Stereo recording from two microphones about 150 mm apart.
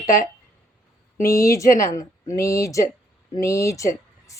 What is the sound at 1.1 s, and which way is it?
Speech, 80° left.